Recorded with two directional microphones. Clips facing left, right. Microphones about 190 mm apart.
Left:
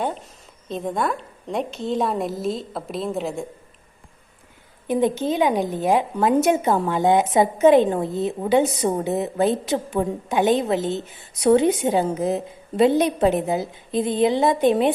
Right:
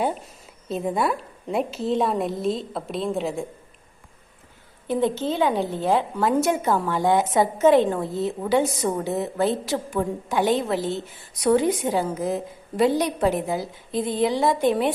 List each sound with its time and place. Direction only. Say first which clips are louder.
0.7 s a woman's voice: right 1 dB; 5° right (ahead or behind)
4.9 s a woman's voice: left 2 dB; 15° left (ahead or behind)